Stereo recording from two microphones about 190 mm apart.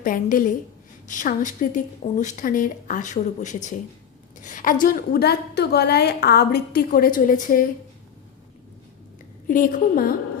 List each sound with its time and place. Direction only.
0.0 s a woman's voice: 45° left (ahead or behind)
9.5 s a woman's voice: 45° left (ahead or behind)